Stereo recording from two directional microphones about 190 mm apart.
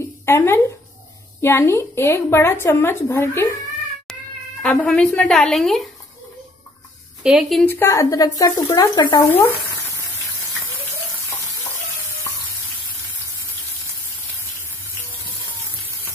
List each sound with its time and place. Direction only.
0.2 s a woman's voice: 15° left (ahead or behind)
7.2 s a woman's voice: centre (ahead or behind)
7.7 s a woman's voice: 15° left (ahead or behind)